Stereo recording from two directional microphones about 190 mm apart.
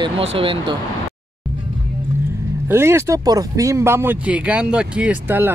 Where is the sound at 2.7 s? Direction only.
15° right (ahead or behind).